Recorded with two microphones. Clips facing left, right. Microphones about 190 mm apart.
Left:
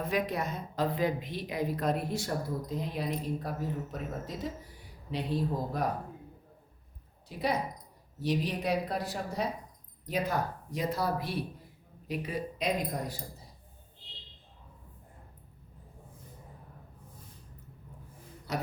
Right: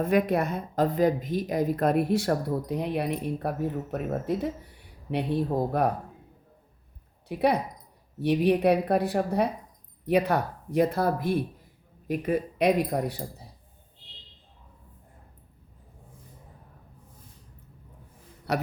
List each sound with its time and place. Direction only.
0.0 s a woman's voice: 55° right (ahead or behind)
7.3 s a woman's voice: 60° right (ahead or behind)
18.5 s speech: 65° right (ahead or behind)